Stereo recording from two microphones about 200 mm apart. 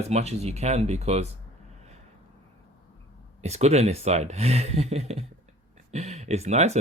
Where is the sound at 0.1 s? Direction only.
35° right (ahead or behind).